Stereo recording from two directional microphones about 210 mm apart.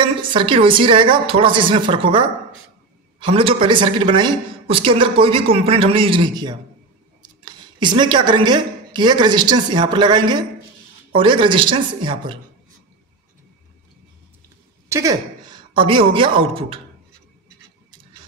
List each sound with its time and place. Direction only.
0.0 s speech: 25° right (ahead or behind)
14.9 s a woman's voice: 15° right (ahead or behind)